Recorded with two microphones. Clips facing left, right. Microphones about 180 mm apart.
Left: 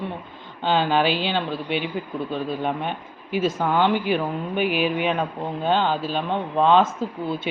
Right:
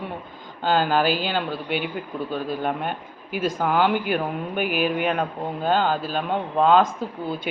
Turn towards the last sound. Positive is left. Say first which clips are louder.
# left 2 dB
turn(degrees=0)  # may be behind; listen again after turning